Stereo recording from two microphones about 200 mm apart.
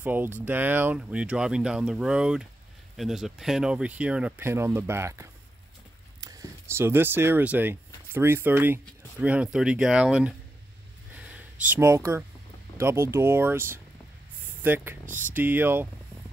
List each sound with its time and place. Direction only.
0.0 s speech: 10° right (ahead or behind)
11.1 s a sound: 5° right (ahead or behind)
12.7 s speech: 15° right (ahead or behind)
15.0 s speech: 40° right (ahead or behind)
15.3 s speech: 10° right (ahead or behind)